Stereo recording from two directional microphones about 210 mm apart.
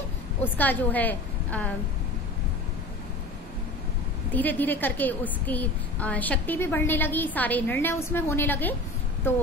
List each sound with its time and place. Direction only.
0.4 s a woman's voice: 10° left (ahead or behind)
4.3 s a woman's voice: 10° left (ahead or behind)